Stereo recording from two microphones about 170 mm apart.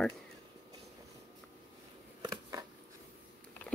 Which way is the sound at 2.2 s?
20° right (ahead or behind).